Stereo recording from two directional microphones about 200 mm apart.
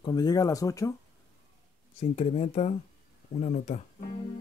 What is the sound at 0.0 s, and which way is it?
Speech, 20° left (ahead or behind).